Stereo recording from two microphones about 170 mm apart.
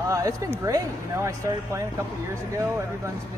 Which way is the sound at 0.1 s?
20° right (ahead or behind).